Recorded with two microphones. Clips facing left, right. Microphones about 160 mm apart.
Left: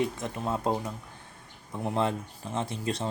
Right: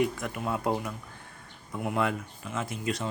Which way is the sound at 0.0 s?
25° left (ahead or behind).